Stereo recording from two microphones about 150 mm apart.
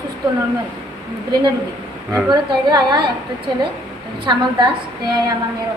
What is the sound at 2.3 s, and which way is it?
A woman's voice, 30° right (ahead or behind).